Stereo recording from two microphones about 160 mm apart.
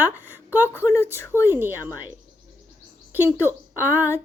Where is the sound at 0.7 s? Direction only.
15° left (ahead or behind).